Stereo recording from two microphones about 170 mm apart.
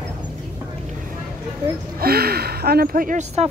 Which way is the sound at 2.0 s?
65° right (ahead or behind).